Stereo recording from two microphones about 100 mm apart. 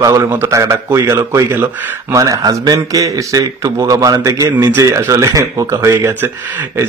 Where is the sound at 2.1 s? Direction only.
35° right (ahead or behind).